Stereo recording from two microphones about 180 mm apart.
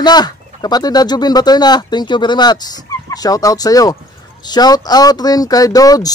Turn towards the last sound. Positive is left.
turn(degrees=20)  # may be behind; listen again after turning